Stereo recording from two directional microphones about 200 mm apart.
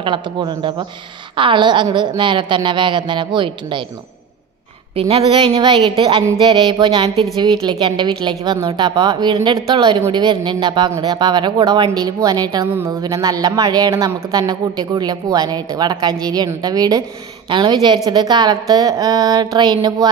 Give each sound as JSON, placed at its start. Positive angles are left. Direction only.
{"t": 0.0, "sound": "a woman's voice", "side_deg": -25}
{"t": 4.9, "sound": "a woman's voice", "side_deg": -30}